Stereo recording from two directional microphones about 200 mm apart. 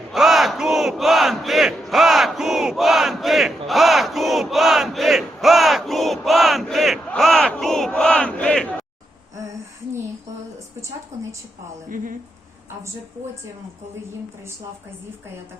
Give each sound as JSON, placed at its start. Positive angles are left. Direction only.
{"t": 0.1, "sound": "battle cry", "side_deg": 0}
{"t": 11.1, "sound": "a sound", "side_deg": -15}
{"t": 11.9, "sound": "speech", "side_deg": -40}